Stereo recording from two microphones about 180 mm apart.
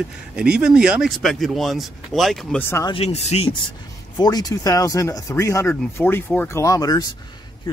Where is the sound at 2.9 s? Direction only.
35° left (ahead or behind).